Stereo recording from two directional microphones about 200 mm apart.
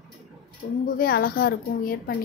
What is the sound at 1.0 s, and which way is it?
A woman's voice, 50° left (ahead or behind).